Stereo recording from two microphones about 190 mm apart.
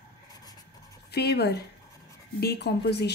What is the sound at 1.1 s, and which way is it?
A woman's voice, 60° left (ahead or behind).